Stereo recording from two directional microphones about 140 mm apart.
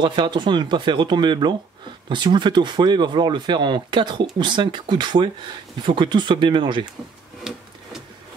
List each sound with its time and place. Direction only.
0.0 s speech: 35° right (ahead or behind)
7.5 s wood: 5° right (ahead or behind)